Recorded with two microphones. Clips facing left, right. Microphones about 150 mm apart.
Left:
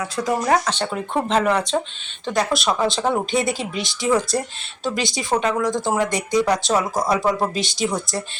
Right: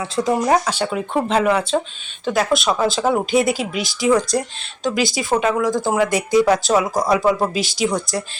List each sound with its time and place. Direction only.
0.0 s speech: 25° right (ahead or behind); by 8.2 s centre (ahead or behind)